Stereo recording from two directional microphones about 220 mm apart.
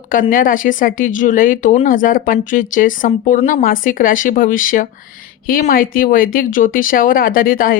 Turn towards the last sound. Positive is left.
turn(degrees=40)  # may be behind; listen again after turning